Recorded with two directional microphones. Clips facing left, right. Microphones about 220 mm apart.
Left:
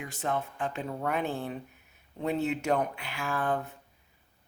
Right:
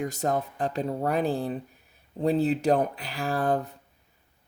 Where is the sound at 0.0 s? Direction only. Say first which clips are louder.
Right 5 dB; 40° right (ahead or behind).